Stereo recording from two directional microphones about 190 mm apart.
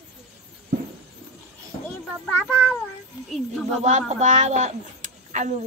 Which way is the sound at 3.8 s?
40° right (ahead or behind).